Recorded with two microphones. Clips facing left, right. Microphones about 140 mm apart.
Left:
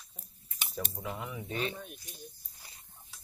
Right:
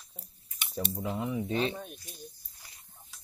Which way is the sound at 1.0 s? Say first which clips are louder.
Right 7 dB; 25° right (ahead or behind).